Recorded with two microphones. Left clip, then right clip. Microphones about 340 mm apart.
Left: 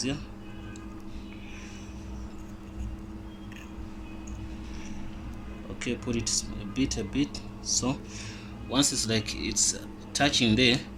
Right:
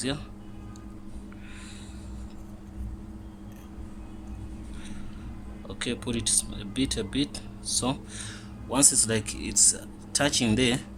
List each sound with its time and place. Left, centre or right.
5.8 s speech: right